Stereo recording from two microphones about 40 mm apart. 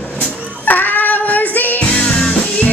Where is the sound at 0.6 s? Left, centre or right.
Left.